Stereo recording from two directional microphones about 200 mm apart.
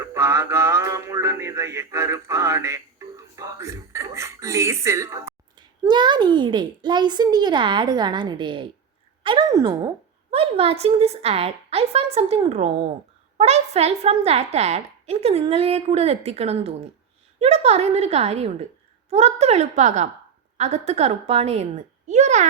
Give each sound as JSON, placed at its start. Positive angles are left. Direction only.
{"t": 0.0, "sound": "a woman's voice", "side_deg": -15}
{"t": 10.3, "sound": "a woman's voice", "side_deg": -30}